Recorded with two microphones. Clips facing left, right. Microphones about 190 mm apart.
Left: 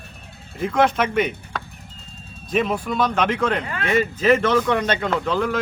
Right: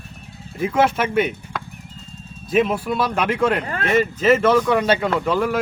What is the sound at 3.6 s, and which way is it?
Speech, 40° right (ahead or behind).